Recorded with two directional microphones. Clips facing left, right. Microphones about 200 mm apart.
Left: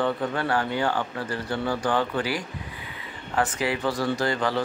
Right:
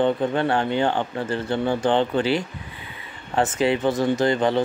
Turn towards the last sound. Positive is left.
turn(degrees=-20)  # may be behind; listen again after turning